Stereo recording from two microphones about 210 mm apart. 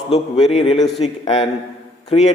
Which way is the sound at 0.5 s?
25° left (ahead or behind).